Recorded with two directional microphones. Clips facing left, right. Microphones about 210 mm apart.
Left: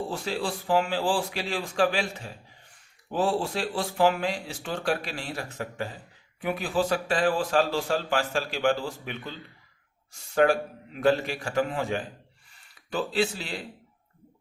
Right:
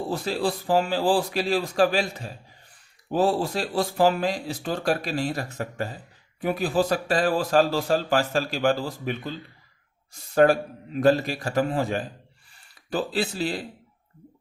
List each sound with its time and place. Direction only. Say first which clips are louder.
0.1 s a man's voice: right 4 dB; 40° right (ahead or behind)